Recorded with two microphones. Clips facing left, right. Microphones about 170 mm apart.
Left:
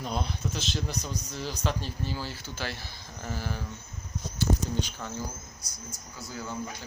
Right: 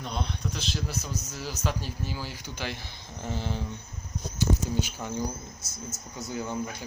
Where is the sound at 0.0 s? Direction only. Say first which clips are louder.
Left 1 dB; 5° left (ahead or behind); by 3.7 s 20° right (ahead or behind).